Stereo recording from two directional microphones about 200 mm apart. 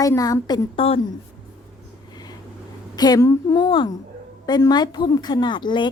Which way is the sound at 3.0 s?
15° left (ahead or behind).